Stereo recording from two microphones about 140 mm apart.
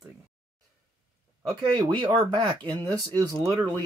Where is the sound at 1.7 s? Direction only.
35° right (ahead or behind).